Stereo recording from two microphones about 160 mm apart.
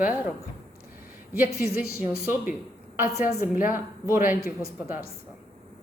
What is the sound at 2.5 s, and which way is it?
A woman's voice, 5° right (ahead or behind).